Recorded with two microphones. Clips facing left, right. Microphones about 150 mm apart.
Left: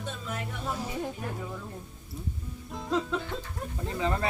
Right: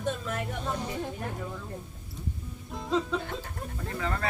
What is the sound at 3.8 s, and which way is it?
Speech, 20° left (ahead or behind).